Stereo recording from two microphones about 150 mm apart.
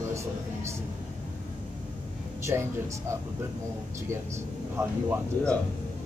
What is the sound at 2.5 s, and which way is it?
Speech, 20° right (ahead or behind).